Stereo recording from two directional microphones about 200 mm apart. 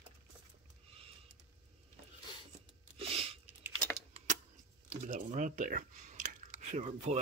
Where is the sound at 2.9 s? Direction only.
25° right (ahead or behind).